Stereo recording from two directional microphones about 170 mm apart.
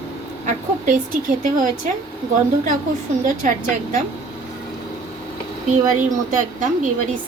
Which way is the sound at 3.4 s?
50° right (ahead or behind).